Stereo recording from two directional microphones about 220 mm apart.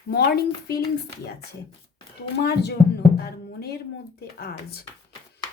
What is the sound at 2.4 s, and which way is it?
Speech, 45° left (ahead or behind).